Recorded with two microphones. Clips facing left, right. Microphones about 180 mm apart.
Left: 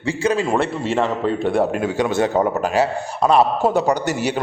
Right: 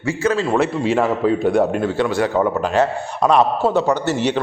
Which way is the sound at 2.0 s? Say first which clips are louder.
Left 1 dB; 20° left (ahead or behind).